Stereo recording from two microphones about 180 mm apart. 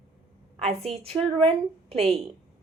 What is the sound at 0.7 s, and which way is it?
A woman's voice, 35° right (ahead or behind).